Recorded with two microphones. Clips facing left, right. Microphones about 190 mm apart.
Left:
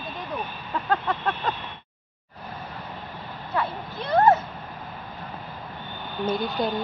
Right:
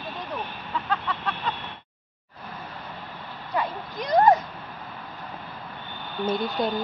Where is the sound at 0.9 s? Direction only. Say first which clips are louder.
Left 5 dB; 45° left (ahead or behind).